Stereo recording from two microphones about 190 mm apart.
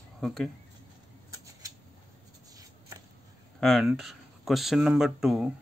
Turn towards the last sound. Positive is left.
turn(degrees=0)  # may be behind; listen again after turning